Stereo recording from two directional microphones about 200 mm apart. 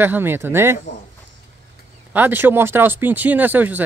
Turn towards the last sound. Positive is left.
turn(degrees=-10)  # may be behind; listen again after turning